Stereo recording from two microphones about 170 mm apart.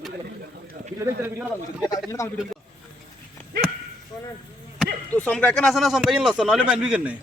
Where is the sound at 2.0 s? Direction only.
20° left (ahead or behind).